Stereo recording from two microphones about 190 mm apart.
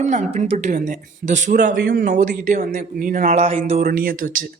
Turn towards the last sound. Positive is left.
turn(degrees=-45)  # may be behind; listen again after turning